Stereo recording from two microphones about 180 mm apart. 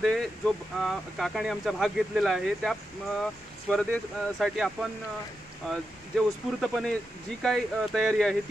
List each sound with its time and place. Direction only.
0.0 s speech: centre (ahead or behind)
5.7 s speech: centre (ahead or behind)